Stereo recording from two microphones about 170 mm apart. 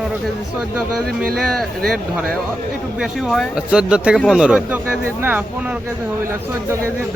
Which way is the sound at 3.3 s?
Centre (ahead or behind).